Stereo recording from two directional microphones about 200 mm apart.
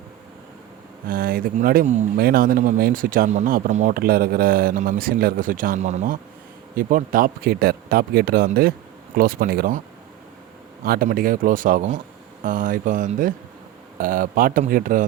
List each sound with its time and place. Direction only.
1.0 s speech: 45° right (ahead or behind)
10.8 s speech: 45° right (ahead or behind)